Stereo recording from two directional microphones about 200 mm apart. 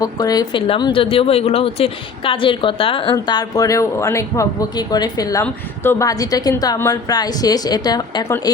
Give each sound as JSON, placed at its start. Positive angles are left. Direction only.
{"t": 0.0, "sound": "a woman's voice", "side_deg": 20}